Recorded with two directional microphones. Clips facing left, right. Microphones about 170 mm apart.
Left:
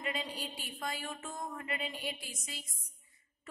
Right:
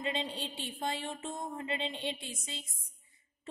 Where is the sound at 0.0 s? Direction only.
25° right (ahead or behind).